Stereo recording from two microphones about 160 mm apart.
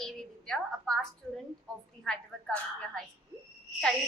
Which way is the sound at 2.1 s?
5° left (ahead or behind).